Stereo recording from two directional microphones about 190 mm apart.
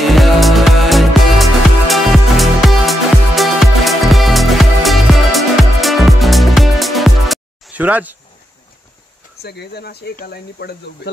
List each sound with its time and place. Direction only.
0.0 s music: centre (ahead or behind)
9.4 s speech: 60° left (ahead or behind)